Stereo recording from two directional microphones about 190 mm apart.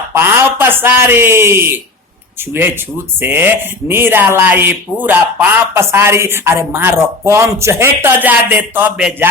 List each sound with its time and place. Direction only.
0.1 s speech: 10° right (ahead or behind)